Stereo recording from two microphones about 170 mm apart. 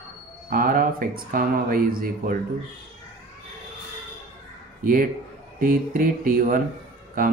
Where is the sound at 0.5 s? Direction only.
55° right (ahead or behind).